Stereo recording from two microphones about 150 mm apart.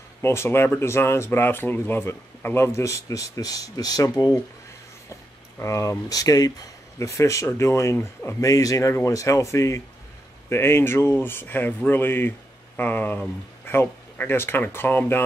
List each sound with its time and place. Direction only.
0.2 s speech: 15° left (ahead or behind)
5.6 s speech: 20° left (ahead or behind)